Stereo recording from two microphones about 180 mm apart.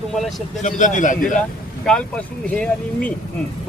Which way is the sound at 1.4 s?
5° left (ahead or behind).